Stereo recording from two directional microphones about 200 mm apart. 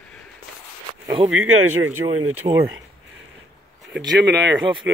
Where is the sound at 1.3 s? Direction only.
90° right.